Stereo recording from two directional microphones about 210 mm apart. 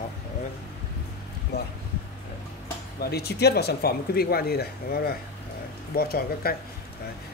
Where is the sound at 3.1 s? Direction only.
50° left (ahead or behind).